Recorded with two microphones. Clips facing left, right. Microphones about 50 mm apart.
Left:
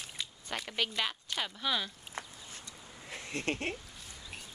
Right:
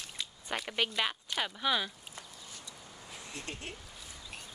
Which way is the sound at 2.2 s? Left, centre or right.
Left.